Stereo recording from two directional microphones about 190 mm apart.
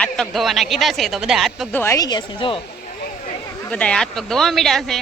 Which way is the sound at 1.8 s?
15° left (ahead or behind).